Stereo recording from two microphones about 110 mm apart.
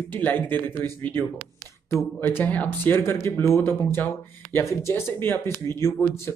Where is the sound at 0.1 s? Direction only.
15° left (ahead or behind).